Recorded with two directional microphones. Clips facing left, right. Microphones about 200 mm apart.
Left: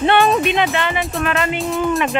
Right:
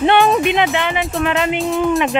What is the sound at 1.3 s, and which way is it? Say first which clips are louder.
Speech: right 2 dB; 15° right (ahead or behind).